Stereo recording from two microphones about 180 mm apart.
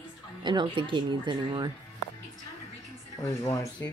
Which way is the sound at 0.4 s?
25° right (ahead or behind).